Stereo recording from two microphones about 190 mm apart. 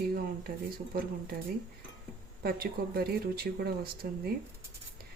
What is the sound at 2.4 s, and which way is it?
Speech, 55° right (ahead or behind).